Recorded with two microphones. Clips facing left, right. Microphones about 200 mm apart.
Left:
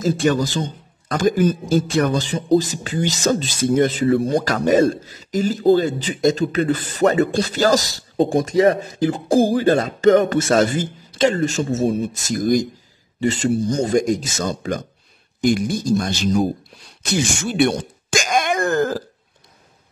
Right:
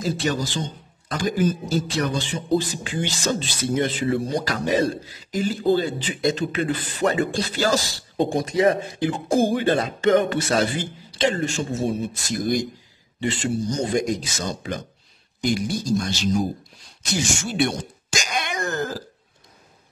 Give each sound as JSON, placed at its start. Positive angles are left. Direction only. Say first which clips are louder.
{"t": 0.0, "sound": "a man's voice", "louder": "left 6 dB", "side_deg": 50}